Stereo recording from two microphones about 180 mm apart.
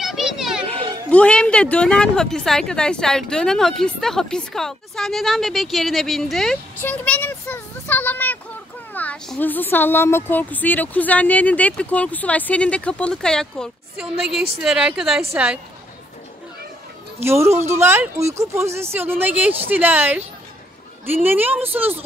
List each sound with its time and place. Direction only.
0.0 s a child's voice: centre (ahead or behind)
17.2 s speech: 15° right (ahead or behind)